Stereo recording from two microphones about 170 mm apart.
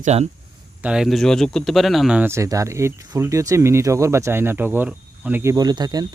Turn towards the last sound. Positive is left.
turn(degrees=-25)  # may be behind; listen again after turning